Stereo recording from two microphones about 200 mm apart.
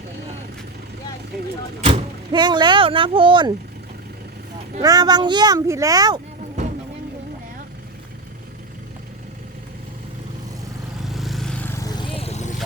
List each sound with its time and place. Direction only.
1.8 s speech: 25° right (ahead or behind)
4.8 s speech: 20° right (ahead or behind)
11.0 s vehicle: centre (ahead or behind); by 12.5 s 30° left (ahead or behind)